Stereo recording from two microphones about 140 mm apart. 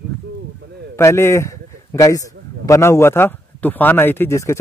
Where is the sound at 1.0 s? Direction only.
20° left (ahead or behind).